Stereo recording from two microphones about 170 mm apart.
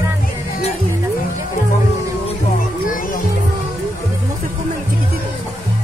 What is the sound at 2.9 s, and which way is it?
Music, 55° left (ahead or behind).